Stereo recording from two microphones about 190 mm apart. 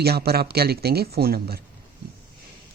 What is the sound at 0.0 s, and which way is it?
Speech, 55° right (ahead or behind).